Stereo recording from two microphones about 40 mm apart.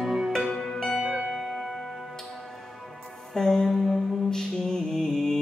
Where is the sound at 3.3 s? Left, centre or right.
Centre.